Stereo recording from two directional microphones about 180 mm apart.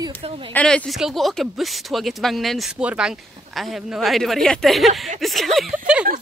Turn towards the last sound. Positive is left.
turn(degrees=-5)  # may be behind; listen again after turning